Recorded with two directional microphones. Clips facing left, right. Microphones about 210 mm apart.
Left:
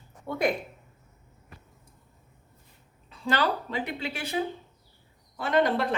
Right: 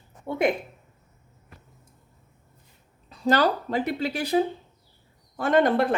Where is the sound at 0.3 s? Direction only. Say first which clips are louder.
Right 3 dB; 25° right (ahead or behind).